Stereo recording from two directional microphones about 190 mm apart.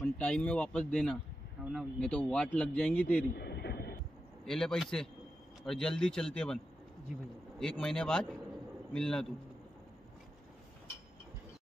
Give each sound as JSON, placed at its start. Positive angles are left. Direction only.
{"t": 0.0, "sound": "a man's voice", "side_deg": 5}
{"t": 3.3, "sound": "vehicle", "side_deg": 60}
{"t": 4.5, "sound": "speech", "side_deg": 5}